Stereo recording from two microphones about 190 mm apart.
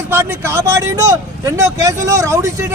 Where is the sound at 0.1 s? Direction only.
15° right (ahead or behind).